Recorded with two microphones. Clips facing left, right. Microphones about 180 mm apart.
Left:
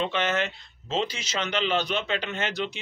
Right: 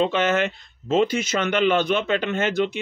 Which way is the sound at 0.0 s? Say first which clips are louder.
Right 6 dB; 45° right (ahead or behind).